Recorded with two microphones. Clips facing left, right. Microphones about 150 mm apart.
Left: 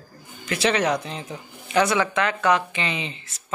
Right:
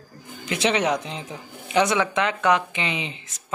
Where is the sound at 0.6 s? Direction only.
20° right (ahead or behind).